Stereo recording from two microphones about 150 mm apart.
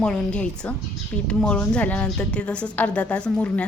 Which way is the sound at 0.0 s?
5° left (ahead or behind).